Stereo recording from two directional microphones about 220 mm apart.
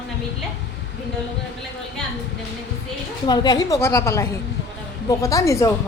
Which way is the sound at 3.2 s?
20° left (ahead or behind).